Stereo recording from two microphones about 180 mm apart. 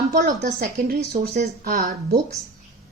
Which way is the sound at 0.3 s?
45° right (ahead or behind).